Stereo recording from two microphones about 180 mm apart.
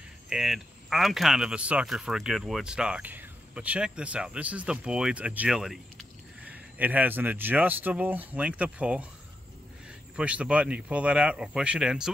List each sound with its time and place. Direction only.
0.3 s speech: centre (ahead or behind)
10.1 s speech: 5° right (ahead or behind)